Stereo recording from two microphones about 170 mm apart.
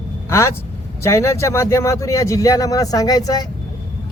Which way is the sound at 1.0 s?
15° left (ahead or behind).